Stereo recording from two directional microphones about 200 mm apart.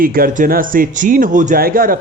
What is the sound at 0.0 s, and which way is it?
Speech, 45° right (ahead or behind).